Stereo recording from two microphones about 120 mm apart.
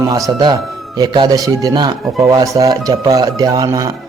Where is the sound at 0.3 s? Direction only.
35° right (ahead or behind).